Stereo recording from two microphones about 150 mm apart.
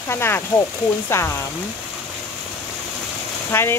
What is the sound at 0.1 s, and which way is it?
Speech, 15° left (ahead or behind).